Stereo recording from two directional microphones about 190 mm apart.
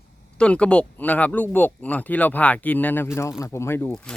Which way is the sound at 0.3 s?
5° left (ahead or behind).